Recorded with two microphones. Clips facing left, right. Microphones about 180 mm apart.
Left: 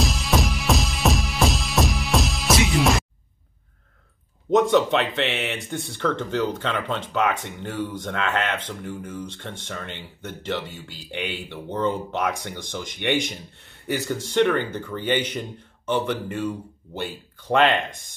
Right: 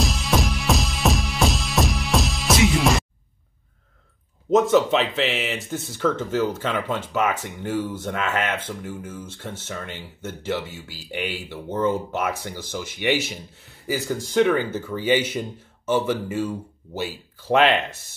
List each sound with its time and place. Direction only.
0.0 s music: centre (ahead or behind)
4.5 s speech: centre (ahead or behind)